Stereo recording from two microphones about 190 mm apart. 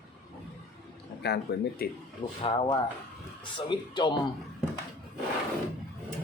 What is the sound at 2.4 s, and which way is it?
Speech, 25° left (ahead or behind).